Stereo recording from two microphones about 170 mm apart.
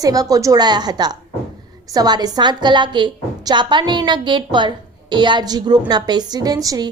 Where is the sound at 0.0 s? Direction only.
20° right (ahead or behind).